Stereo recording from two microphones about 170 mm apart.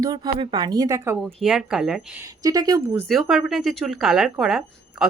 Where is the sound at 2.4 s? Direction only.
20° right (ahead or behind).